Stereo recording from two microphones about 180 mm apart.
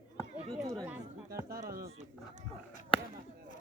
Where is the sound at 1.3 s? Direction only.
55° right (ahead or behind).